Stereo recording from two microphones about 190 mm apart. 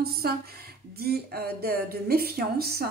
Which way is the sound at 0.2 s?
55° right (ahead or behind).